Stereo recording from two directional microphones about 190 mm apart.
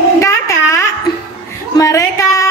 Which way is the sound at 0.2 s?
15° left (ahead or behind).